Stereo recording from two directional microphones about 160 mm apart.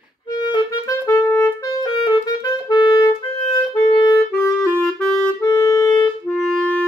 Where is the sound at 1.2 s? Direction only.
15° left (ahead or behind).